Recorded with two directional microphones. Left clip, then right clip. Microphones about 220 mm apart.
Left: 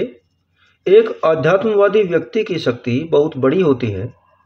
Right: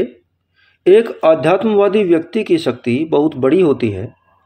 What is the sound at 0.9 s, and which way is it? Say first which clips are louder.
Speech: right 2 dB; 35° right (ahead or behind).